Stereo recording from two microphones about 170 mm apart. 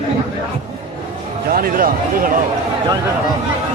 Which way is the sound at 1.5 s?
55° right (ahead or behind).